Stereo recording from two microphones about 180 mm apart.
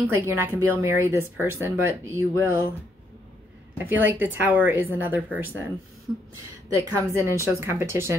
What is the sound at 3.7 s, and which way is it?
Speech, 10° right (ahead or behind).